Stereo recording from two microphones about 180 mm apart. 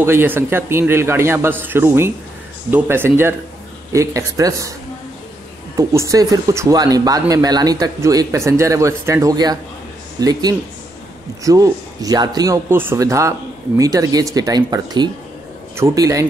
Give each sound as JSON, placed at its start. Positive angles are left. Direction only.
{"t": 0.0, "sound": "a man's voice", "side_deg": -15}
{"t": 5.8, "sound": "speech", "side_deg": -20}
{"t": 11.4, "sound": "a man's voice", "side_deg": -20}